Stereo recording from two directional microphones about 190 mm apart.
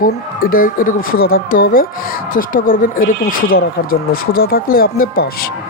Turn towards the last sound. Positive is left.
turn(degrees=50)  # may be behind; listen again after turning